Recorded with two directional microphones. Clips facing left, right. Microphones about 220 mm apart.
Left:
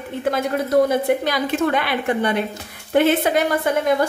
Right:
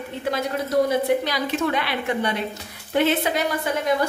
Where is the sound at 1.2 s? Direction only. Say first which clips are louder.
Left 4 dB; 50° left (ahead or behind).